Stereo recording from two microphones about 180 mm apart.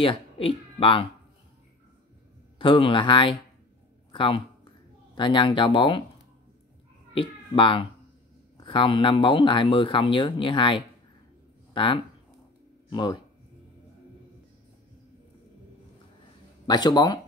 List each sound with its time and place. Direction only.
0.0 s speech: 30° left (ahead or behind)
2.6 s speech: 30° left (ahead or behind)
4.1 s a sound: 30° left (ahead or behind)
5.1 s speech: 25° left (ahead or behind)
7.2 s speech: 30° left (ahead or behind)
16.6 s speech: 25° left (ahead or behind)